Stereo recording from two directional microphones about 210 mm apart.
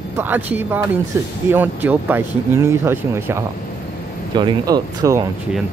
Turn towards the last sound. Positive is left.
turn(degrees=-15)  # may be behind; listen again after turning